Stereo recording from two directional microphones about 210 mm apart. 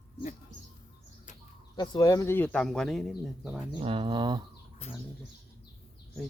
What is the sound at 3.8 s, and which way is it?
Speech, 25° right (ahead or behind).